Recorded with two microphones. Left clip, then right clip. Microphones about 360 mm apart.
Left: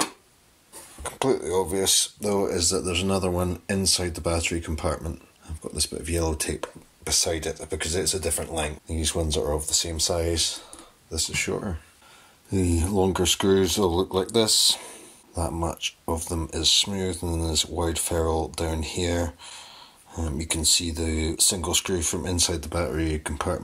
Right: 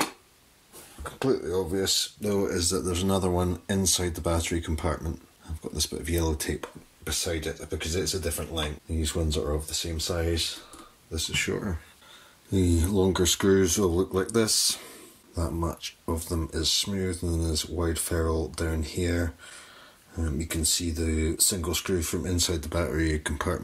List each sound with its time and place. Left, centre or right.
1.2 s speech: left
1.9 s speech: centre
17.2 s speech: left
17.5 s speech: centre